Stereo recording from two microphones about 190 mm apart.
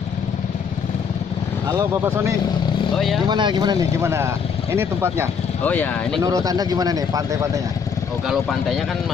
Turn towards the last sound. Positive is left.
turn(degrees=-15)  # may be behind; listen again after turning